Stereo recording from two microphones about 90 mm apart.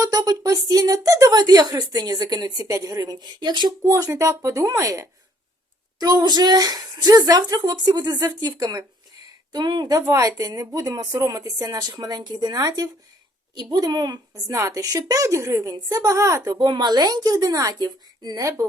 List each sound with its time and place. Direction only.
0.3 s a woman's voice: 45° right (ahead or behind)
1.3 s speech: 50° right (ahead or behind)
3.8 s a woman's voice: 35° right (ahead or behind); by 10.0 s 55° right (ahead or behind)
10.1 s a woman's voice: 40° right (ahead or behind)
16.5 s speech: 50° right (ahead or behind)